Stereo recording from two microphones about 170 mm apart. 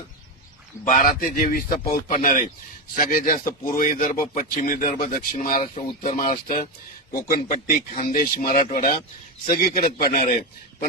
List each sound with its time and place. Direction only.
0.9 s speech: 50° left (ahead or behind)
1.9 s speech: 40° left (ahead or behind)
2.9 s speech: 55° left (ahead or behind); by 6.7 s 40° left (ahead or behind)
7.1 s a man's voice: 55° left (ahead or behind)
8.4 s speech: 40° left (ahead or behind)
9.5 s a man's voice: 60° left (ahead or behind)